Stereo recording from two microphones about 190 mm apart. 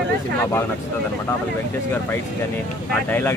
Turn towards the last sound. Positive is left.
turn(degrees=10)  # may be behind; listen again after turning